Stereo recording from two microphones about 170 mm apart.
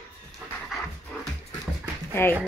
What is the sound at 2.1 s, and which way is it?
Speech, 15° left (ahead or behind).